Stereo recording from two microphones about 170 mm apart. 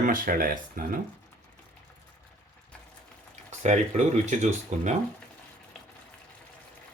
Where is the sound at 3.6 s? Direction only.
45° right (ahead or behind).